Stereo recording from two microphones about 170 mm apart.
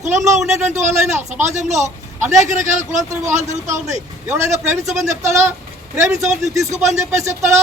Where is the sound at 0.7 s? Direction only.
45° right (ahead or behind).